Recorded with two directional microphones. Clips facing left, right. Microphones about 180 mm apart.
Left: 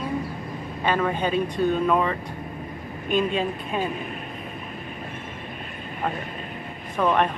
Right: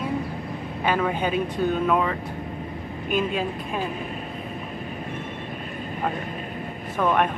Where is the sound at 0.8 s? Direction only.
10° right (ahead or behind).